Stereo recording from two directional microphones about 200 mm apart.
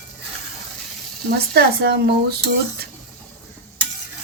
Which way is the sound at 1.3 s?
55° right (ahead or behind).